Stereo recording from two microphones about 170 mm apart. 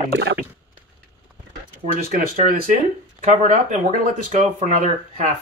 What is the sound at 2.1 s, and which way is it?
Speech, 55° right (ahead or behind).